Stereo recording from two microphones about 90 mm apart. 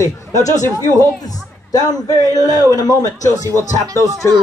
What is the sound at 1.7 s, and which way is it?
Speech, 40° left (ahead or behind).